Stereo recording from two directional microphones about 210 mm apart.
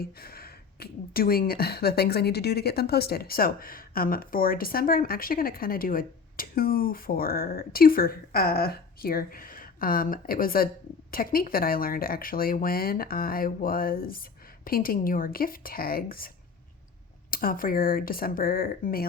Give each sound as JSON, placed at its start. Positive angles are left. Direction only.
{"t": 0.0, "sound": "speech", "side_deg": 45}
{"t": 17.3, "sound": "speech", "side_deg": 45}